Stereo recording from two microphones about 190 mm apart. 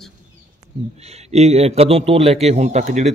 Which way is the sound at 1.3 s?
35° right (ahead or behind).